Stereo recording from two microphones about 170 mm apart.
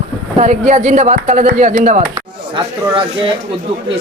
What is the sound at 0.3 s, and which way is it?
Speech, 45° right (ahead or behind).